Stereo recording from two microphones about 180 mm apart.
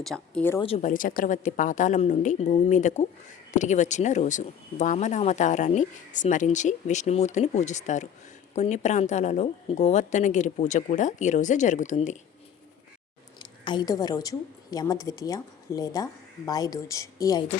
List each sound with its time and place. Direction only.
0.0 s speech: 5° left (ahead or behind)
0.8 s a woman's voice: 45° left (ahead or behind)
13.4 s a woman's voice: 25° left (ahead or behind)